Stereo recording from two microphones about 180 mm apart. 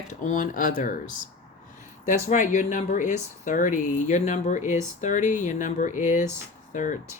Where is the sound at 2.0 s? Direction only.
45° left (ahead or behind).